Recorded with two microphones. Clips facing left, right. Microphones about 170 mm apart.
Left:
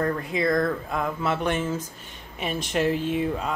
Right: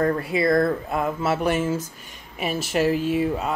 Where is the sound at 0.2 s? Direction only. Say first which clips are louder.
Right 3 dB; 10° right (ahead or behind).